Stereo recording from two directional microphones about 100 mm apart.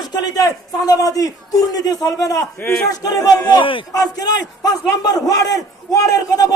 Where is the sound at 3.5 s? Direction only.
55° left (ahead or behind).